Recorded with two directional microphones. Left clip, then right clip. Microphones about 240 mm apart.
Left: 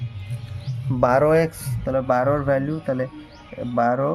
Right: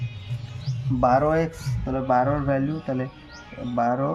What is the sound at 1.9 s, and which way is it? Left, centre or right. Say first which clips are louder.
Speech: left 2 dB; left.